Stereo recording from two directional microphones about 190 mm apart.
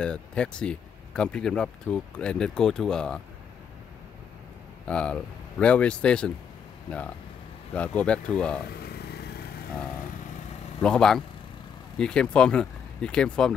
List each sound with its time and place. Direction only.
0.0 s speech: 5° left (ahead or behind)
4.8 s speech: 5° left (ahead or behind)
7.7 s speech: 5° left (ahead or behind)
8.8 s vehicle: 55° left (ahead or behind)
10.8 s speech: 5° left (ahead or behind)